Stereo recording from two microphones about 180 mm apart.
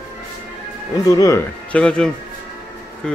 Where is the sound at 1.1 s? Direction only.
20° left (ahead or behind).